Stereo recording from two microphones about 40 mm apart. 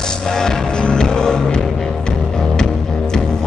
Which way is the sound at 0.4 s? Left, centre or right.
Centre.